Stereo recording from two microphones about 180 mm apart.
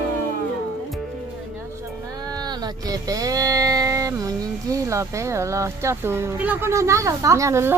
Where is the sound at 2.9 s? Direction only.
20° right (ahead or behind).